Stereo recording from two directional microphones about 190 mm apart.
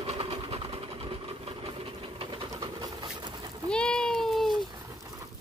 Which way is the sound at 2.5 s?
20° right (ahead or behind).